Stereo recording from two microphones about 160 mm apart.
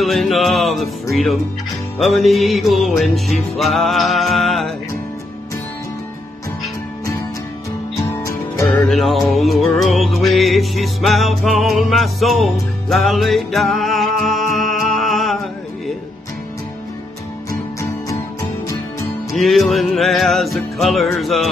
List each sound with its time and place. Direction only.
0.0 s music: centre (ahead or behind)
8.1 s music: 15° left (ahead or behind); by 15.4 s centre (ahead or behind)
17.5 s music: 20° left (ahead or behind)
19.3 s music: centre (ahead or behind)